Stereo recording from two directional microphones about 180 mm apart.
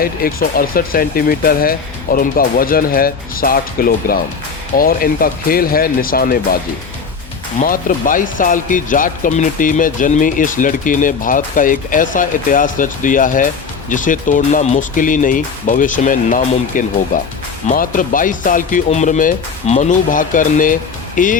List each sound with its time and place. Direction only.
0.0 s speech: 55° left (ahead or behind)
7.6 s speech: 50° left (ahead or behind)